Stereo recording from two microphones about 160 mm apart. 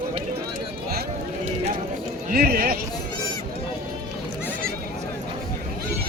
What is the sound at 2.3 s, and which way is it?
Speech, 65° right (ahead or behind).